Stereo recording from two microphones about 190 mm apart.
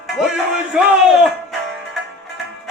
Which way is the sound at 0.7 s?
Centre (ahead or behind).